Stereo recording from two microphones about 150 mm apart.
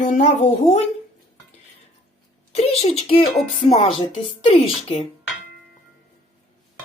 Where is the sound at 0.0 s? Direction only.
50° left (ahead or behind).